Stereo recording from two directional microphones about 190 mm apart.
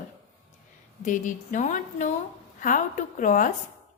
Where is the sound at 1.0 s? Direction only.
40° left (ahead or behind).